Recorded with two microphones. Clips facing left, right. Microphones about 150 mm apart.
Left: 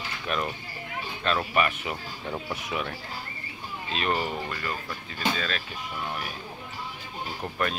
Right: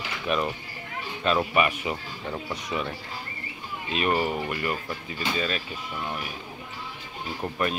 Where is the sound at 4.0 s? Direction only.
10° right (ahead or behind).